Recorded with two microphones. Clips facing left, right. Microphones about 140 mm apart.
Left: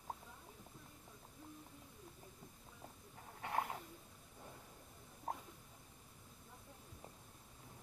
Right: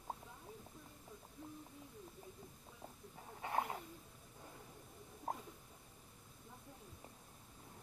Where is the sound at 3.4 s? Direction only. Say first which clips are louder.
Right 1 dB; 5° right (ahead or behind).